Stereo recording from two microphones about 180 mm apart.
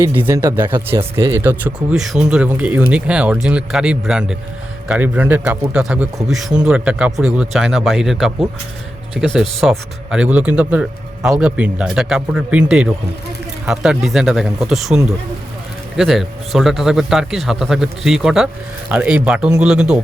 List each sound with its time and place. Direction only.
0.0 s speech: 10° right (ahead or behind)